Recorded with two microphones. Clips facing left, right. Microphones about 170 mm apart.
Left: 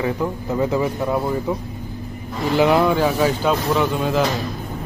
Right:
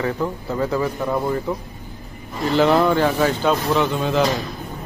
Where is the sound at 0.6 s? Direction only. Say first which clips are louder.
Left 2 dB; 20° left (ahead or behind).